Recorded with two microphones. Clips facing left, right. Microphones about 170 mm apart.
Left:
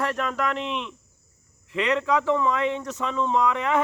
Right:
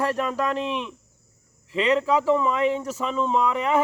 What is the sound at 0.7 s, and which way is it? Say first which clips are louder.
Speech: right 2 dB; 10° right (ahead or behind).